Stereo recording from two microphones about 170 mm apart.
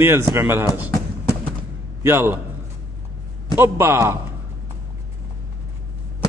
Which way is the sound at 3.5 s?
15° right (ahead or behind).